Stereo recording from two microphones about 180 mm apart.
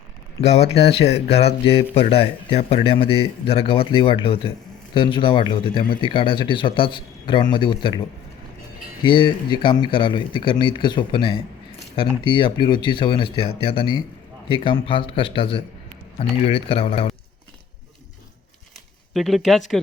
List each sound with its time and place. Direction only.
0.4 s speech: 35° left (ahead or behind)
9.0 s speech: 25° left (ahead or behind)
19.1 s speech: centre (ahead or behind)